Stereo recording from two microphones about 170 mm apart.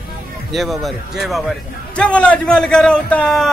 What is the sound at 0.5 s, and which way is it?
A man's voice, centre (ahead or behind).